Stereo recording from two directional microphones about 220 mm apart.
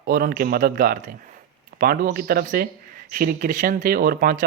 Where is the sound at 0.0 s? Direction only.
45° right (ahead or behind).